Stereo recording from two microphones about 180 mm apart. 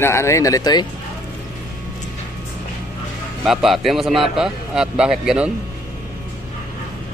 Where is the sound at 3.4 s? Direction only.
Centre (ahead or behind).